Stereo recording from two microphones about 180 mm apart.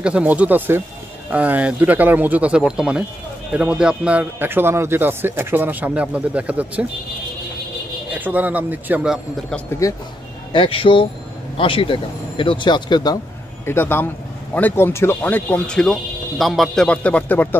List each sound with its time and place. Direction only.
0.0 s a man's voice: 5° right (ahead or behind)
8.1 s a man's voice: 10° right (ahead or behind)
9.8 s speech: 15° left (ahead or behind)
10.5 s speech: 30° left (ahead or behind)
13.7 s speech: 10° left (ahead or behind)